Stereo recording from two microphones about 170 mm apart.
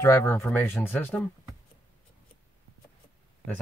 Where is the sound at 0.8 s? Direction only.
10° left (ahead or behind).